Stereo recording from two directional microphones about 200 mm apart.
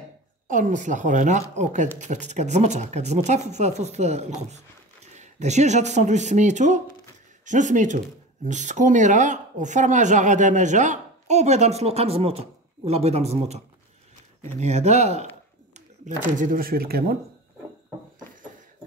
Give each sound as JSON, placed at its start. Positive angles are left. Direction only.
{"t": 0.5, "sound": "speech", "side_deg": -40}
{"t": 16.3, "sound": "speech", "side_deg": -45}